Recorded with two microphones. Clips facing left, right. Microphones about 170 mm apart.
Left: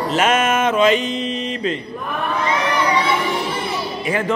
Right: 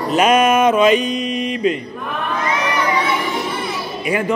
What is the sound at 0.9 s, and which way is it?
Mantra, 25° left (ahead or behind).